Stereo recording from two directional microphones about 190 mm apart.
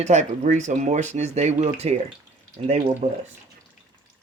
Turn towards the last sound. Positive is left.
turn(degrees=-40)  # may be behind; listen again after turning